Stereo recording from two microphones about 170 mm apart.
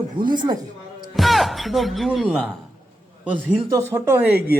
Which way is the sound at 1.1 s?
Centre (ahead or behind).